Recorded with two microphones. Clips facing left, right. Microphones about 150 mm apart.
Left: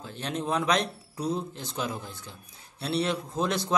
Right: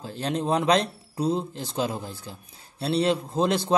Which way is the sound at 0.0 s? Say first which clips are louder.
Right 5 dB; 35° right (ahead or behind).